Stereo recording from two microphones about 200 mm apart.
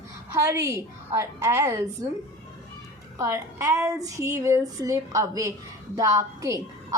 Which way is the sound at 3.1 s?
15° right (ahead or behind).